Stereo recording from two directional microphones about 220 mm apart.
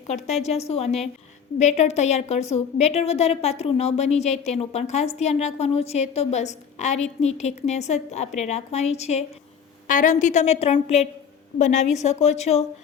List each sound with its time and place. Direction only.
0.1 s a woman's voice: 30° left (ahead or behind)